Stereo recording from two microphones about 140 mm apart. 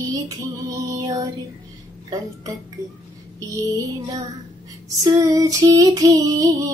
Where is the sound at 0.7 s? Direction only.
25° right (ahead or behind).